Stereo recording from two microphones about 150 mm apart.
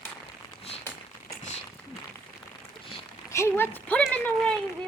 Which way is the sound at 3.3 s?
20° left (ahead or behind).